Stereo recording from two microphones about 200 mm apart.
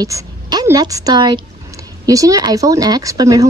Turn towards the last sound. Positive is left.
turn(degrees=-15)  # may be behind; listen again after turning